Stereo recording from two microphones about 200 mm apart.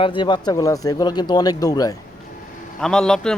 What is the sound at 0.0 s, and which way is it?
Speech, 25° left (ahead or behind).